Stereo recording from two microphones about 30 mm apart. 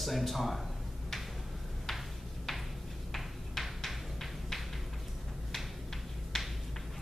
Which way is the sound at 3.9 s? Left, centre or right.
Centre.